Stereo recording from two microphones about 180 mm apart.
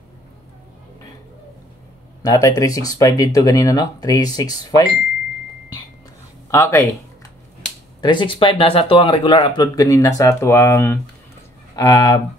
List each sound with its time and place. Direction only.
2.2 s a man's voice: 20° left (ahead or behind)
6.5 s speech: 15° left (ahead or behind)
8.0 s a man's voice: 25° left (ahead or behind)